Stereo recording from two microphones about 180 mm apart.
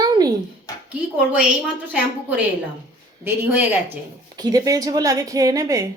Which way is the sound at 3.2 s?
10° right (ahead or behind).